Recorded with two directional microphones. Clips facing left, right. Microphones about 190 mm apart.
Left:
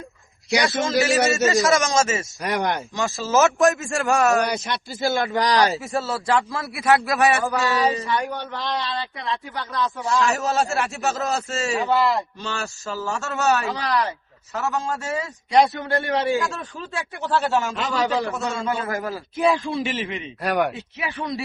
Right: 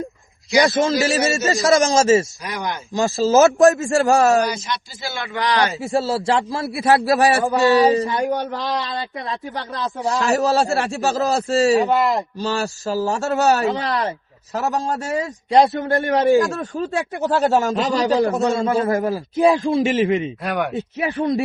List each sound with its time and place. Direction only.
0.5 s speech: 40° right (ahead or behind)
2.4 s speech: 60° left (ahead or behind)
2.9 s speech: 30° right (ahead or behind)
4.4 s a man's voice: 60° left (ahead or behind); by 5.8 s 40° left (ahead or behind)
5.8 s a man's voice: 30° right (ahead or behind)
11.9 s speech: 20° right (ahead or behind)
12.4 s speech: 35° right (ahead or behind)
13.7 s a man's voice: 25° right (ahead or behind)
14.5 s speech: 35° right (ahead or behind)
20.4 s speech: centre (ahead or behind)
21.0 s speech: 40° right (ahead or behind)